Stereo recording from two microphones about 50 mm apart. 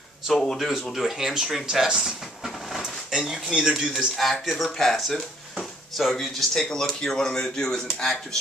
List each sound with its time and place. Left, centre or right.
0.3 s speech: centre
0.9 s speech: centre
2.8 s a sound: centre
3.8 s speech: centre
4.2 s speech: centre